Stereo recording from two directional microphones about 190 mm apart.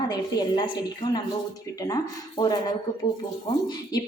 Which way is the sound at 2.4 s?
25° left (ahead or behind).